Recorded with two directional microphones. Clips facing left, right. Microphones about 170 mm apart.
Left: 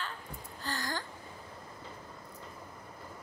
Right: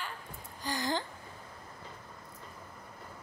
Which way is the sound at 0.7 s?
20° right (ahead or behind).